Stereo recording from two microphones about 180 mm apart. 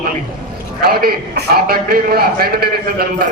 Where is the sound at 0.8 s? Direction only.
55° right (ahead or behind).